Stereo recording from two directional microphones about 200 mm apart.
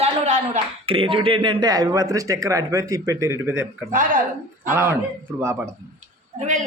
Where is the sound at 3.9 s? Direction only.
40° right (ahead or behind).